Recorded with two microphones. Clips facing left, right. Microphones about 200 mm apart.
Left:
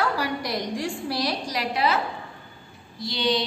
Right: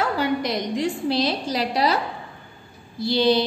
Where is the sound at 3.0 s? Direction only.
40° right (ahead or behind).